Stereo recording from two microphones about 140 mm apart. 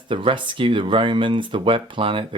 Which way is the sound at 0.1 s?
35° right (ahead or behind).